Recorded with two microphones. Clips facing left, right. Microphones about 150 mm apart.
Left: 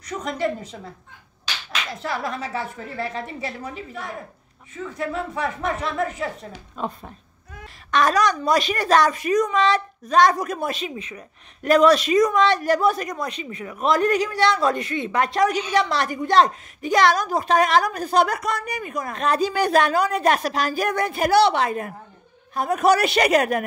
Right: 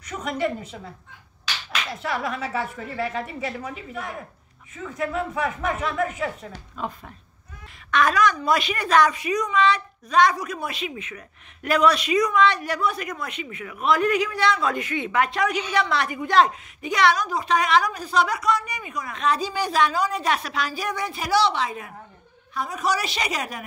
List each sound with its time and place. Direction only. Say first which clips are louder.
0.0 s a woman's voice: left 1 dB; 35° left (ahead or behind)
2.0 s a woman's voice: even; 35° left (ahead or behind)
4.9 s a woman's voice: right 1 dB; 30° left (ahead or behind)
7.9 s a woman's voice: left 1 dB; 35° left (ahead or behind); by 23.6 s 55° left (ahead or behind)